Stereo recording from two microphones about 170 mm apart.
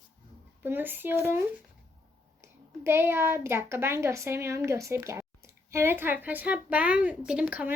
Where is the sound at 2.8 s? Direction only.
15° right (ahead or behind).